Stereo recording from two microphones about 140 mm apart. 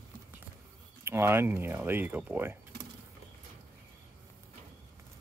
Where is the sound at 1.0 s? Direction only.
15° right (ahead or behind).